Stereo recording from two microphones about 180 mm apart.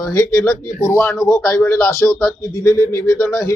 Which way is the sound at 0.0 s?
15° left (ahead or behind).